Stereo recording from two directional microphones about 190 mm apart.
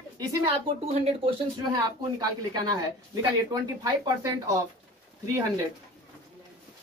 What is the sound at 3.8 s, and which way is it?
Speech, 15° right (ahead or behind).